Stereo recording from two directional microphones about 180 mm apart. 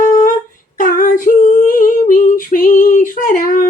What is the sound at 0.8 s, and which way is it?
Female singing, 50° left (ahead or behind).